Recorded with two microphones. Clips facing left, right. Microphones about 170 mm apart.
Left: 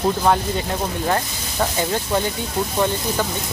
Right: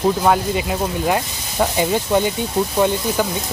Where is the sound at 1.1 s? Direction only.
10° right (ahead or behind).